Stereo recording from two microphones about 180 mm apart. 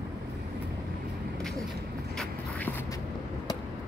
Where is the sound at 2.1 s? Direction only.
10° left (ahead or behind).